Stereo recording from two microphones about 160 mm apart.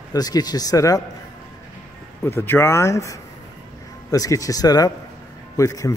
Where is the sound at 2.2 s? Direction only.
15° left (ahead or behind).